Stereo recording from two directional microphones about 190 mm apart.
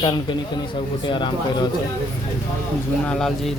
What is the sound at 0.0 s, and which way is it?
Speech, 25° left (ahead or behind).